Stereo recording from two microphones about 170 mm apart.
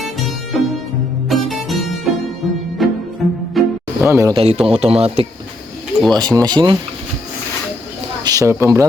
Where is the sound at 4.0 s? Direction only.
15° right (ahead or behind).